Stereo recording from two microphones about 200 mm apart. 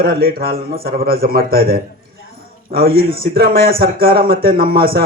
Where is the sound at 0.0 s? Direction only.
50° right (ahead or behind).